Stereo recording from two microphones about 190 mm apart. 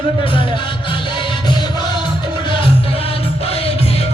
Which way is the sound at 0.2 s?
25° left (ahead or behind).